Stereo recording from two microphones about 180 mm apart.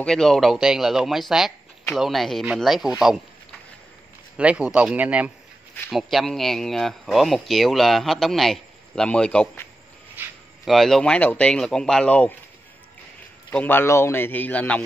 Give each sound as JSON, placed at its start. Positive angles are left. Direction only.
{"t": 0.0, "sound": "speech", "side_deg": 5}
{"t": 4.4, "sound": "speech", "side_deg": -5}
{"t": 13.5, "sound": "a man's voice", "side_deg": 10}